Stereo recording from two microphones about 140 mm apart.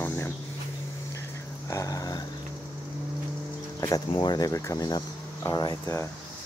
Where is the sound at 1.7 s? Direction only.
25° left (ahead or behind).